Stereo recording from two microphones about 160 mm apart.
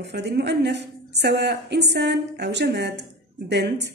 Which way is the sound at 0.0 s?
90° right.